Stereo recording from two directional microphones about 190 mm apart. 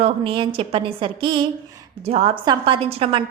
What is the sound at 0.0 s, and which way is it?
A woman's voice, 25° right (ahead or behind).